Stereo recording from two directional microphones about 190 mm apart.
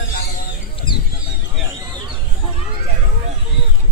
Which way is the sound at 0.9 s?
25° left (ahead or behind).